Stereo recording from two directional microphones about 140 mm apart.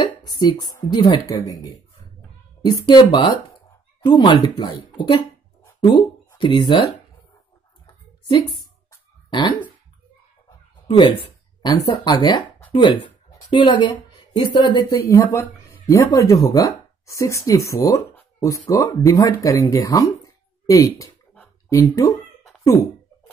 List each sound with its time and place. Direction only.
0.0 s a sound: 30° left (ahead or behind)
0.8 s speech: 25° left (ahead or behind)
9.3 s speech: 35° left (ahead or behind)
10.9 s a woman's voice: 35° left (ahead or behind)
15.2 s speech: 20° left (ahead or behind)